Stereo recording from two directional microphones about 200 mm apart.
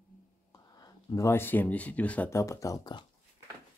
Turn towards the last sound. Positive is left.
turn(degrees=20)  # may be behind; listen again after turning